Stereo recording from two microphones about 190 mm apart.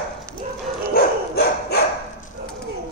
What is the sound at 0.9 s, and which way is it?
Dog, 55° left (ahead or behind).